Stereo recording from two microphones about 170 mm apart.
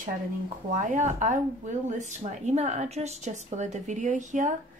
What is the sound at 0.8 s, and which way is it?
A woman's voice, 45° right (ahead or behind).